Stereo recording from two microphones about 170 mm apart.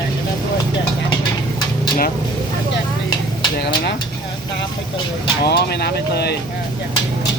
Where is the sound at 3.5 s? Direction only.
80° left.